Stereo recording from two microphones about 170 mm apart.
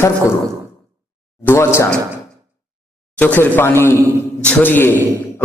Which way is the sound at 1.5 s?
15° left (ahead or behind).